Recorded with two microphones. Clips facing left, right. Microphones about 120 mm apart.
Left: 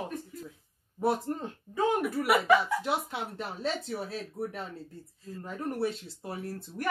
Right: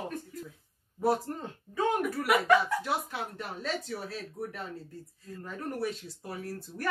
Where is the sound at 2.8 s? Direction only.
25° left (ahead or behind).